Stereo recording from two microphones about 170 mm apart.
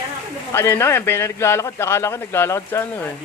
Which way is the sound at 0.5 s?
15° left (ahead or behind).